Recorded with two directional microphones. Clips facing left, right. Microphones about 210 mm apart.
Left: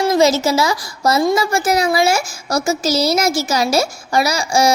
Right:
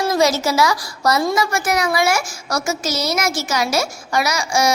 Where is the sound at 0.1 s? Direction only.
25° left (ahead or behind).